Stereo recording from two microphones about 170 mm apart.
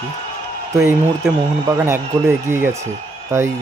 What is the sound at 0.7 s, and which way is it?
Speech, 15° right (ahead or behind).